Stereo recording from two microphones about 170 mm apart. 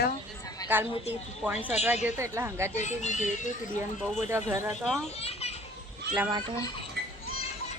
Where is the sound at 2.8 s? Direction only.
45° left (ahead or behind).